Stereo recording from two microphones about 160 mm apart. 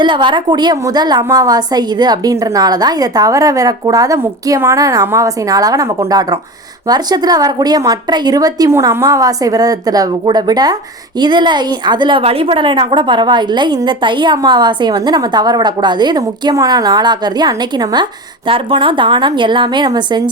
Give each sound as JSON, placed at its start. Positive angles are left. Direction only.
{"t": 0.0, "sound": "a woman's voice", "side_deg": -30}